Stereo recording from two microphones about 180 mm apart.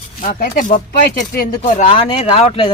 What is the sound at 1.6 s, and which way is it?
Speech, 35° left (ahead or behind).